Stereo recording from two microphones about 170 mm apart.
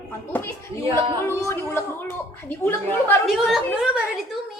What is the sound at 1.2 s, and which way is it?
Speech, 15° left (ahead or behind).